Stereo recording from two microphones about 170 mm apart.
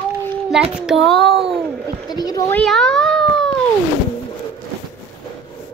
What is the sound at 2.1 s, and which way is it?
Speech, 25° left (ahead or behind).